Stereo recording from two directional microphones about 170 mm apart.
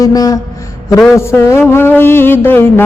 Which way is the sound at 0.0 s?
20° left (ahead or behind).